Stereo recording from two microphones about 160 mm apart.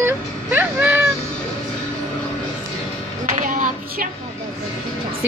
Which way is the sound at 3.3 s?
50° right (ahead or behind).